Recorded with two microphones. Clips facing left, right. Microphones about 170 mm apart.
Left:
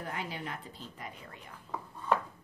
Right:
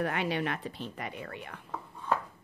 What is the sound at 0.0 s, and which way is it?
A woman's voice, 70° right (ahead or behind).